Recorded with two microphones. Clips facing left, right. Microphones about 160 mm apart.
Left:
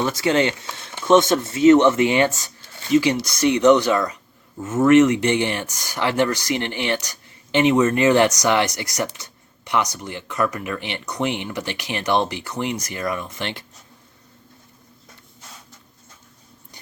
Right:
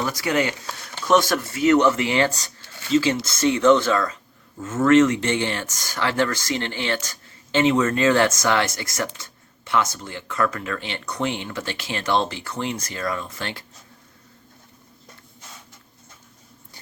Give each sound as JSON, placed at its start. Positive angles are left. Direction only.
{"t": 0.0, "sound": "speech", "side_deg": 25}